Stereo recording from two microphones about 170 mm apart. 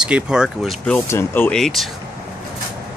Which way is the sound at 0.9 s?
15° left (ahead or behind).